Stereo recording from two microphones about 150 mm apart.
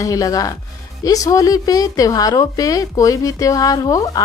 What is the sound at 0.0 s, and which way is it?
A woman's voice, 25° left (ahead or behind).